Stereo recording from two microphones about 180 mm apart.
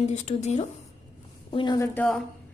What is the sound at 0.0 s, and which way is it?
Speech, 40° left (ahead or behind).